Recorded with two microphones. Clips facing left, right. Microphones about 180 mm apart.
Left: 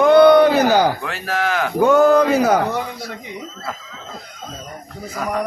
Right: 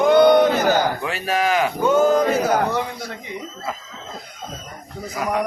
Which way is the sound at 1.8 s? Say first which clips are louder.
Left 5 dB; 70° left (ahead or behind).